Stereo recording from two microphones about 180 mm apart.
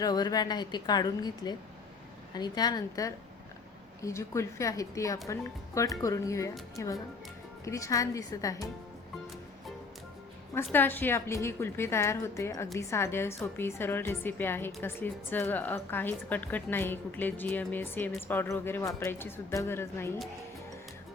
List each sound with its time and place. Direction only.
0.0 s a woman's voice: 20° left (ahead or behind)
10.5 s a woman's voice: 10° left (ahead or behind)